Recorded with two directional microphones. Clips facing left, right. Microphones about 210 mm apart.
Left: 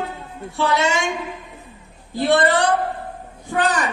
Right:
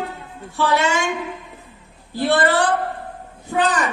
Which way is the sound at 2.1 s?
15° left (ahead or behind).